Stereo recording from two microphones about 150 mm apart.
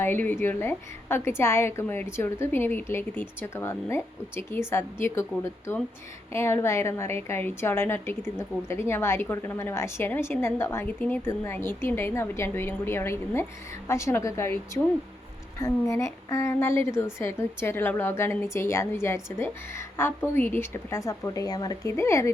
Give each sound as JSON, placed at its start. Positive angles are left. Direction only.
{"t": 0.0, "sound": "a woman's voice", "side_deg": 15}